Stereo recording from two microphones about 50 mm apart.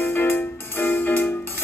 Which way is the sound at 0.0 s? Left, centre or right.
Left.